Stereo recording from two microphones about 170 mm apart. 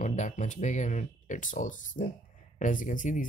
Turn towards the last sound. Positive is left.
turn(degrees=50)  # may be behind; listen again after turning